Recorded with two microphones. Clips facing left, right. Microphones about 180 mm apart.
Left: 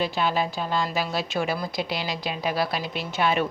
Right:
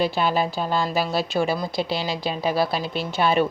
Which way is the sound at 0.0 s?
35° right (ahead or behind).